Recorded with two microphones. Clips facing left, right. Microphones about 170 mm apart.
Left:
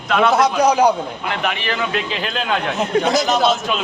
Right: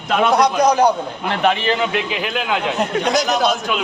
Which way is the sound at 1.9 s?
10° right (ahead or behind).